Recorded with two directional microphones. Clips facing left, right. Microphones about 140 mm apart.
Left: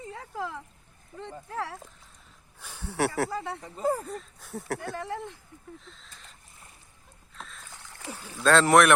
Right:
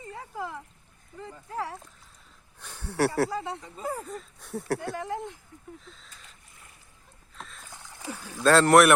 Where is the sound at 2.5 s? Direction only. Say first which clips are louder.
Even; 10° left (ahead or behind).